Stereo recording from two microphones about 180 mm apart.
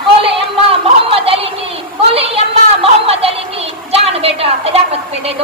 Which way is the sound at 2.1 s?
30° right (ahead or behind).